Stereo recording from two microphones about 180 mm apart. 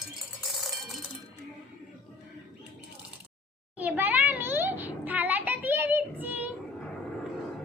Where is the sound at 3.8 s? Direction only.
10° right (ahead or behind).